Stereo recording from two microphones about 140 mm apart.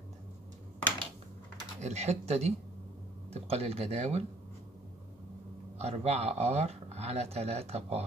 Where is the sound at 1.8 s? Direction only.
50° right (ahead or behind).